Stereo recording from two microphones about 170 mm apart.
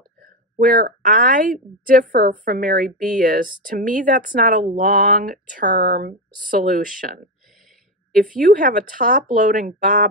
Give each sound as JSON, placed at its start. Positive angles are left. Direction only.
{"t": 0.2, "sound": "a woman's voice", "side_deg": -55}
{"t": 2.3, "sound": "speech", "side_deg": -55}
{"t": 5.8, "sound": "speech", "side_deg": -90}
{"t": 6.0, "sound": "speech", "side_deg": -55}